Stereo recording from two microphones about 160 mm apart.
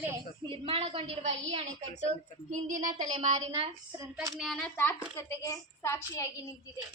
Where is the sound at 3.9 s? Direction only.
20° right (ahead or behind).